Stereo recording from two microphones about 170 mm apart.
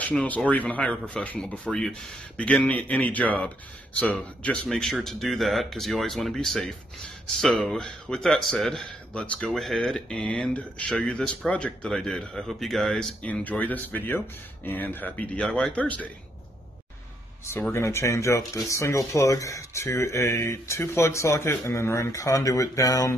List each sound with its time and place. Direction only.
0.0 s a man's voice: 5° left (ahead or behind)
17.5 s speech: 15° left (ahead or behind)